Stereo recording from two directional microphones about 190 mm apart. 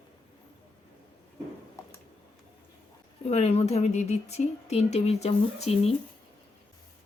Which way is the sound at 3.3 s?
35° left (ahead or behind).